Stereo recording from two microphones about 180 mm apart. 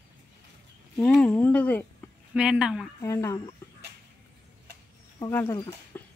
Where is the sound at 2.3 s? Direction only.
5° right (ahead or behind).